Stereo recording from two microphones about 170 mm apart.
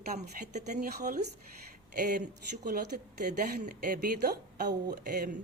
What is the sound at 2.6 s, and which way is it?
Speech, 70° right (ahead or behind).